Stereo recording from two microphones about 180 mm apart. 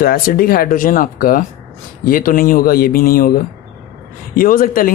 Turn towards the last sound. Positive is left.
turn(degrees=50)  # may be behind; listen again after turning